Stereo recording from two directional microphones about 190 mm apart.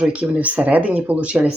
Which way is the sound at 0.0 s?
5° right (ahead or behind).